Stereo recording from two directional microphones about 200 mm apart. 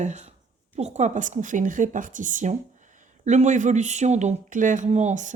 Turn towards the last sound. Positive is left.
turn(degrees=-35)  # may be behind; listen again after turning